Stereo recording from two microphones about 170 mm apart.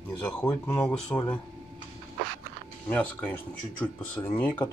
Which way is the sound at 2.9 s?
10° left (ahead or behind).